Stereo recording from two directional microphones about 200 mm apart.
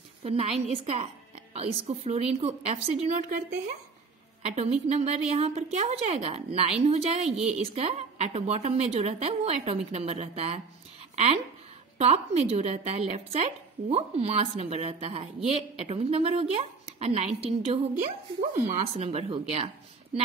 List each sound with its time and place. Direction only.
0.2 s speech: 30° right (ahead or behind)
12.0 s speech: 35° right (ahead or behind)
19.0 s speech: 25° right (ahead or behind)